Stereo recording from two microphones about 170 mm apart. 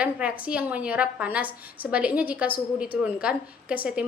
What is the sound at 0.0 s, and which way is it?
A woman's voice, 10° right (ahead or behind).